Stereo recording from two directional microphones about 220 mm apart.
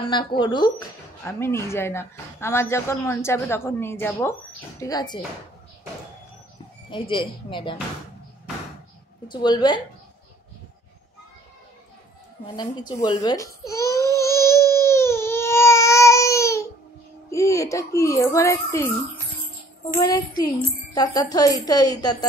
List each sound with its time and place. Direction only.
0.0 s a woman's voice: 20° left (ahead or behind)
6.9 s a woman's voice: 20° left (ahead or behind)
9.3 s a woman's voice: 20° left (ahead or behind)
12.5 s speech: 20° left (ahead or behind)
14.1 s baby cry: 10° left (ahead or behind)
17.3 s a child's voice: 15° left (ahead or behind)
20.0 s a woman's voice: 20° left (ahead or behind)